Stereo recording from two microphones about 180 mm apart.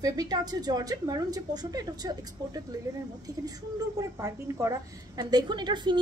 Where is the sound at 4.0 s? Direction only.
15° right (ahead or behind).